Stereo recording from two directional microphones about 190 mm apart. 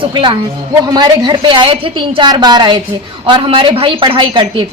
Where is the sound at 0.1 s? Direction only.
25° right (ahead or behind).